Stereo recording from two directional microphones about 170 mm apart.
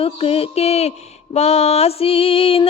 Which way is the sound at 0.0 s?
35° left (ahead or behind).